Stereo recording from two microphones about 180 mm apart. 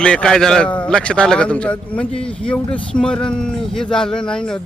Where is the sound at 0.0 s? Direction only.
5° left (ahead or behind).